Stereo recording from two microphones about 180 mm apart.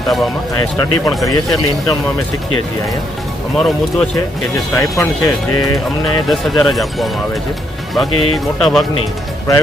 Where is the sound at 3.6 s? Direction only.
5° left (ahead or behind).